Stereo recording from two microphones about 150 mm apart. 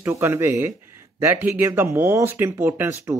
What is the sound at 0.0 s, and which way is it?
Speech, 15° right (ahead or behind).